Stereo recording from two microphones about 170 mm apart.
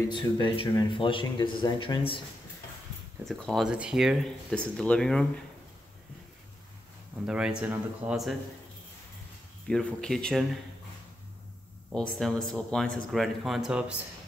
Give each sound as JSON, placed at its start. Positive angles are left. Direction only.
{"t": 0.1, "sound": "speech", "side_deg": 30}
{"t": 3.3, "sound": "a man's voice", "side_deg": 0}
{"t": 7.2, "sound": "a man's voice", "side_deg": -5}
{"t": 9.7, "sound": "a man's voice", "side_deg": 5}
{"t": 11.9, "sound": "a man's voice", "side_deg": 5}